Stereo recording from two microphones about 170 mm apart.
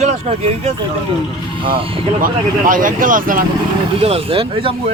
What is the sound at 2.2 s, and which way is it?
Speech, 55° right (ahead or behind).